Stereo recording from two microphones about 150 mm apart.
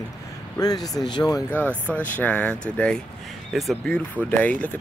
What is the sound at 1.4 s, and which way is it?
Speech, 10° left (ahead or behind).